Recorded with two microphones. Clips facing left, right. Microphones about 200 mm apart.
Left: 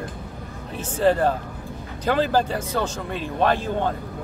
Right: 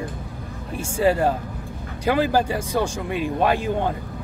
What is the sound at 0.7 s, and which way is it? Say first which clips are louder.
Speech: even; 10° right (ahead or behind).